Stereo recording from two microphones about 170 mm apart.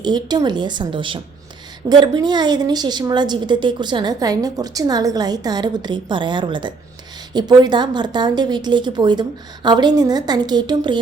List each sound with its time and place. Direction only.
0.0 s a woman's voice: 25° right (ahead or behind)